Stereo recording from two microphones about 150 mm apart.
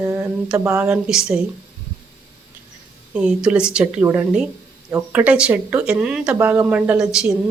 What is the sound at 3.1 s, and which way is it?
Speech, 5° right (ahead or behind).